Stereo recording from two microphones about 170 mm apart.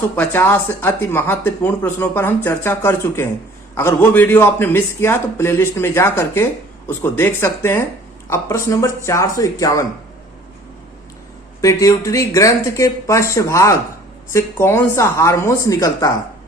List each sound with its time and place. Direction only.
0.2 s a man's voice: 10° left (ahead or behind)
11.6 s a man's voice: 20° left (ahead or behind)